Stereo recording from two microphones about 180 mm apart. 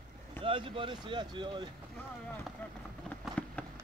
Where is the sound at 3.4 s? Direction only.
5° left (ahead or behind).